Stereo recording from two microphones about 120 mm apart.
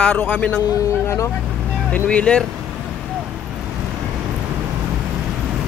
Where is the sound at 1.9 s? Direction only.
10° left (ahead or behind).